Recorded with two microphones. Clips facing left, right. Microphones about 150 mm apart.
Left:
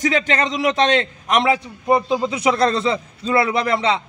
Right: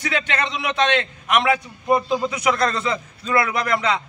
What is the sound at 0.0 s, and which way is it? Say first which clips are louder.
A man's voice: left 5 dB; 40° left (ahead or behind).